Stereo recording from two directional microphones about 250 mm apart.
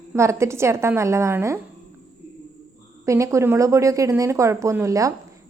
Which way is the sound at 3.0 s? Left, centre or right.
Centre.